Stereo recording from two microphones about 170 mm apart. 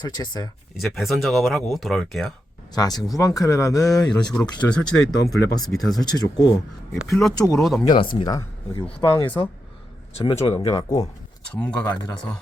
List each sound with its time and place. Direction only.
0.0 s speech: 25° left (ahead or behind)
0.8 s speech: centre (ahead or behind)
2.7 s speech: 20° left (ahead or behind)
3.9 s speech: 5° left (ahead or behind)
6.0 s speech: 25° left (ahead or behind)
7.1 s speech: centre (ahead or behind)
7.3 s speech: 20° left (ahead or behind)
7.6 s speech: centre (ahead or behind)
7.9 s speech: 25° left (ahead or behind)
10.8 s speech: 20° left (ahead or behind)
11.5 s speech: 5° left (ahead or behind)